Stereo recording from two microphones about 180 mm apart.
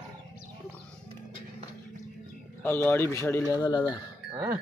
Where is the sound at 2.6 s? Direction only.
15° left (ahead or behind).